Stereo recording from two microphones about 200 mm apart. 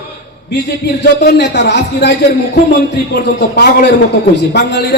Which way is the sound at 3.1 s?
60° left (ahead or behind).